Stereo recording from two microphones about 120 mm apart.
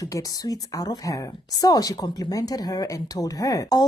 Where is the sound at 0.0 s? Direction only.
30° left (ahead or behind).